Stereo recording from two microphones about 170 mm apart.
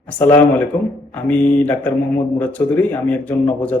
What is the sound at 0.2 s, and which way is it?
Speech, 10° left (ahead or behind).